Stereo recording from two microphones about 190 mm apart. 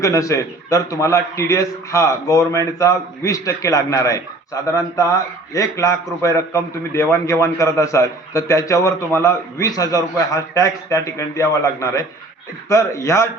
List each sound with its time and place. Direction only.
0.0 s a man's voice: 15° left (ahead or behind)